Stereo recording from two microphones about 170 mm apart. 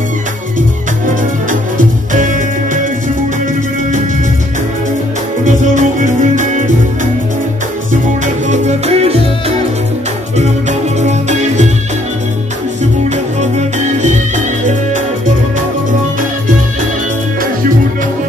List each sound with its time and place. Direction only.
0.6 s music: 50° right (ahead or behind)
5.4 s music: 50° right (ahead or behind)
8.5 s music: 40° right (ahead or behind)
10.3 s music: 45° right (ahead or behind)
13.4 s music: 45° right (ahead or behind)